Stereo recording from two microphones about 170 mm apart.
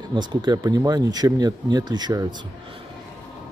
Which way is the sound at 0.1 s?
25° right (ahead or behind).